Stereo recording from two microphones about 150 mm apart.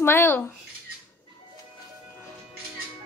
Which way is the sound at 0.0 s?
15° left (ahead or behind).